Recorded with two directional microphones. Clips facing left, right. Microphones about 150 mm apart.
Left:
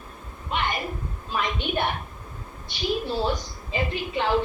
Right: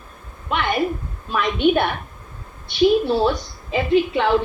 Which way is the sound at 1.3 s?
65° right (ahead or behind).